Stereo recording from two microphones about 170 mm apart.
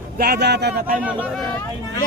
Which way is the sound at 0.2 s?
70° right (ahead or behind).